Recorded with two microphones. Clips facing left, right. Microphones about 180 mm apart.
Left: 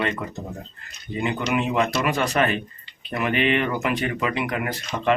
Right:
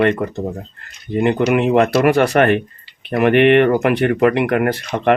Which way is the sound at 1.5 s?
60° right (ahead or behind).